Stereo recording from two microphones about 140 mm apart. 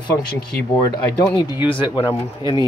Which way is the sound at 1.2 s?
30° left (ahead or behind).